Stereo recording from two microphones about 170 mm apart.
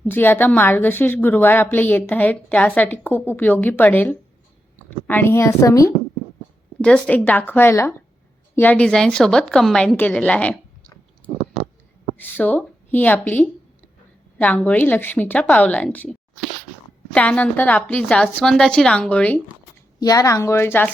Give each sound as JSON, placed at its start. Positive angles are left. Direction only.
{"t": 0.0, "sound": "a woman's voice", "side_deg": 10}
{"t": 6.8, "sound": "a woman's voice", "side_deg": 5}
{"t": 12.1, "sound": "a woman's voice", "side_deg": 10}
{"t": 20.0, "sound": "a woman's voice", "side_deg": 20}